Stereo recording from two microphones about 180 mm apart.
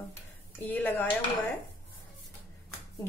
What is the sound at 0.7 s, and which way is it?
Speech, 10° left (ahead or behind).